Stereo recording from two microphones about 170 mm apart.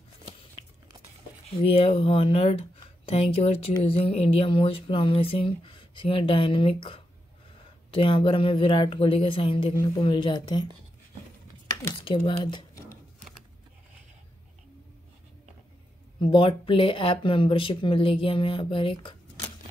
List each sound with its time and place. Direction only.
1.6 s a woman's voice: 35° left (ahead or behind)
12.3 s speech: 30° left (ahead or behind)
16.2 s speech: 30° left (ahead or behind)